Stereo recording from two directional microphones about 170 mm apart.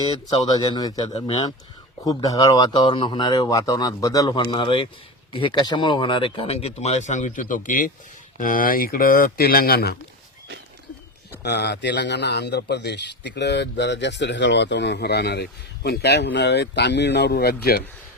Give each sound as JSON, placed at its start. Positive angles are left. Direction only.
{"t": 0.3, "sound": "speech", "side_deg": 25}
{"t": 2.0, "sound": "speech", "side_deg": 20}
{"t": 11.4, "sound": "a man's voice", "side_deg": 75}